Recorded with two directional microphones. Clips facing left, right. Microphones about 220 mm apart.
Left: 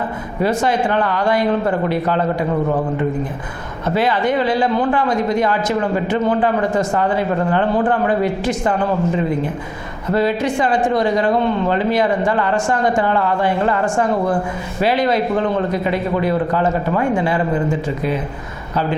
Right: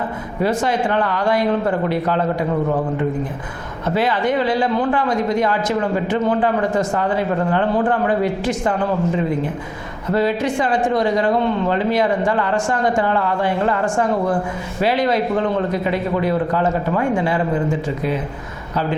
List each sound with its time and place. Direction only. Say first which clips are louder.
0.4 s speech: left 1 dB; 20° left (ahead or behind)
3.9 s speech: left 1 dB; 15° left (ahead or behind)
10.1 s speech: left 1 dB; 20° left (ahead or behind)